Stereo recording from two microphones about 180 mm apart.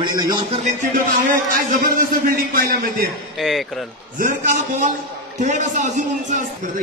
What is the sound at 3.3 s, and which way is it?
Speech, centre (ahead or behind).